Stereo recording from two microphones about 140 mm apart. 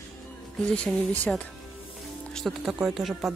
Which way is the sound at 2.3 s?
Centre (ahead or behind).